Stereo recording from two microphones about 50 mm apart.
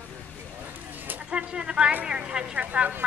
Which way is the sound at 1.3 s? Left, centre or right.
Centre.